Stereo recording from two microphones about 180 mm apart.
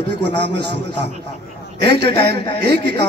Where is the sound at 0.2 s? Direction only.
70° right (ahead or behind).